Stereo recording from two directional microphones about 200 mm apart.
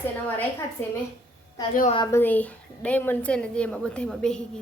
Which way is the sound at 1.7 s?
40° left (ahead or behind).